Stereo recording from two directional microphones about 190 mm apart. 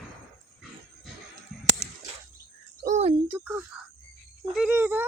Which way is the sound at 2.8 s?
35° right (ahead or behind).